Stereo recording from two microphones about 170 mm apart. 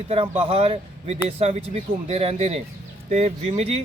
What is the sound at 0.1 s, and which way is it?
A man's voice, 35° right (ahead or behind).